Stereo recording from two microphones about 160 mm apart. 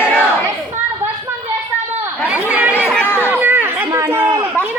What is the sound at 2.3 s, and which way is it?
Chatter, 10° right (ahead or behind).